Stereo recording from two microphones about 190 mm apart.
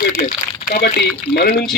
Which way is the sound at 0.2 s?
50° left (ahead or behind).